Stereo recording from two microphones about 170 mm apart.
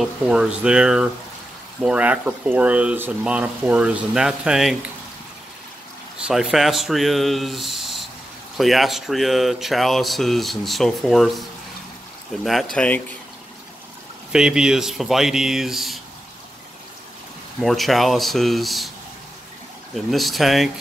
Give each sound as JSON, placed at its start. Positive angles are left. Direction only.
{"t": 0.0, "sound": "speech", "side_deg": -5}
{"t": 6.2, "sound": "speech", "side_deg": -5}
{"t": 12.4, "sound": "speech", "side_deg": 0}
{"t": 14.3, "sound": "speech", "side_deg": -5}
{"t": 17.6, "sound": "speech", "side_deg": 0}
{"t": 19.9, "sound": "speech", "side_deg": 0}